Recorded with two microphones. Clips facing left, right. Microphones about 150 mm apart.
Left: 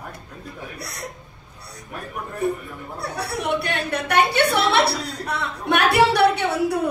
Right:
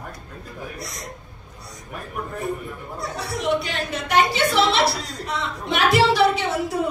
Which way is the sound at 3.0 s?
60° left (ahead or behind).